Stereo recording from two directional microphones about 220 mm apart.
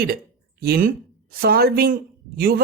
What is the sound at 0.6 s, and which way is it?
Speech, 45° right (ahead or behind).